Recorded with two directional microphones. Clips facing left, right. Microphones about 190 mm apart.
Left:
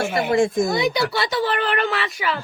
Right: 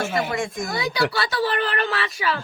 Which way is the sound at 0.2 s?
30° left (ahead or behind).